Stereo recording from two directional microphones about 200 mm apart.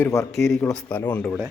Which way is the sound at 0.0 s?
15° left (ahead or behind).